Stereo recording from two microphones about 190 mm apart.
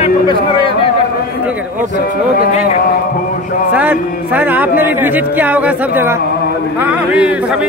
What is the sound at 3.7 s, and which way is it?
A man's voice, 10° right (ahead or behind).